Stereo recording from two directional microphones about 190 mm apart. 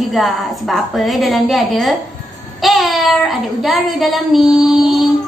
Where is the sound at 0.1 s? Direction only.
Centre (ahead or behind).